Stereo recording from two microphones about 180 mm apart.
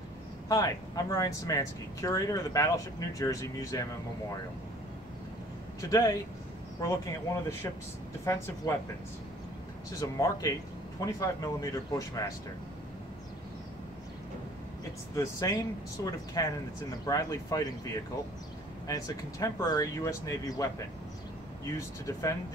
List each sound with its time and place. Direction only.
0.5 s speech: 20° left (ahead or behind)
5.8 s speech: 20° left (ahead or behind)
9.8 s speech: 20° left (ahead or behind)
15.1 s speech: 20° left (ahead or behind)
18.9 s speech: 20° left (ahead or behind)
21.7 s speech: 15° left (ahead or behind)